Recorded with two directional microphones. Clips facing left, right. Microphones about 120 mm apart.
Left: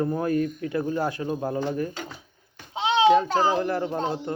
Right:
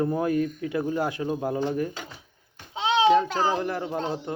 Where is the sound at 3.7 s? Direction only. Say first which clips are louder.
Left 2 dB; 10° right (ahead or behind).